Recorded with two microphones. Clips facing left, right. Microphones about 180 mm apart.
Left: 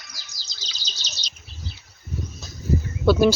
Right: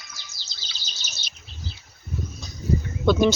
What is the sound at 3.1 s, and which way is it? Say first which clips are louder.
Speech: left 2 dB; 5° left (ahead or behind).